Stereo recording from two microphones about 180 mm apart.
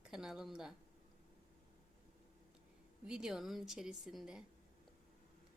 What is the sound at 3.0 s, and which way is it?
A woman's voice, 5° right (ahead or behind).